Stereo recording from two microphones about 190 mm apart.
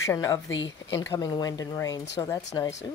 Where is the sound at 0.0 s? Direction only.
15° left (ahead or behind).